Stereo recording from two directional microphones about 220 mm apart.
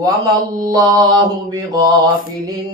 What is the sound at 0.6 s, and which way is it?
Mantra, 15° right (ahead or behind).